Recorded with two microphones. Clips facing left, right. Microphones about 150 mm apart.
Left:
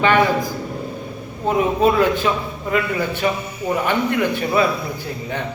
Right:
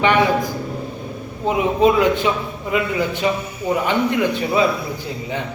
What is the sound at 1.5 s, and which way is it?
A man's voice, 15° right (ahead or behind).